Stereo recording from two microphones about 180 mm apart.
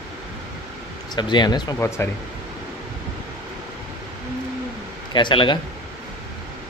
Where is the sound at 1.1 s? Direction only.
25° left (ahead or behind).